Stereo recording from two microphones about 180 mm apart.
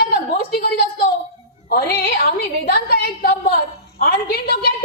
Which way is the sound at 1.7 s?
60° left (ahead or behind).